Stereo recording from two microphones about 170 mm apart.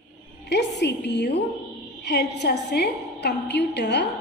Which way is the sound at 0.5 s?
90° left.